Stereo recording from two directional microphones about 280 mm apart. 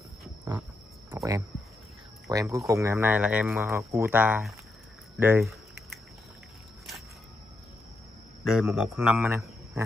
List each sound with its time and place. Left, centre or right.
1.1 s a sound: centre
2.2 s speech: centre
8.5 s a man's voice: centre